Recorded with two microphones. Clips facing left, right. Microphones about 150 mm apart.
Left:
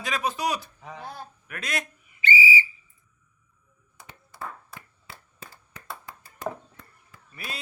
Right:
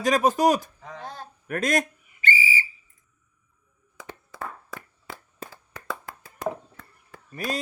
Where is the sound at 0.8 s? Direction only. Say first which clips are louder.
Right 1 dB; 10° left (ahead or behind).